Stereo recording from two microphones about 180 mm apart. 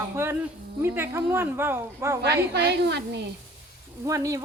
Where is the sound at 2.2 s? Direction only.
65° right (ahead or behind).